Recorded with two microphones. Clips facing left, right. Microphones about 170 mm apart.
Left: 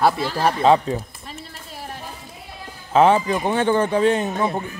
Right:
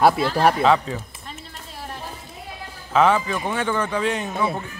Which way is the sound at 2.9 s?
30° left (ahead or behind).